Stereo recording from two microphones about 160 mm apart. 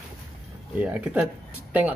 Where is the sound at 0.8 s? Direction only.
10° right (ahead or behind).